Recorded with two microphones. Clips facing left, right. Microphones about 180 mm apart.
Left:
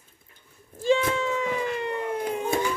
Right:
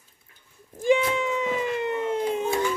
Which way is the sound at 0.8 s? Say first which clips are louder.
Right 1 dB; 15° right (ahead or behind).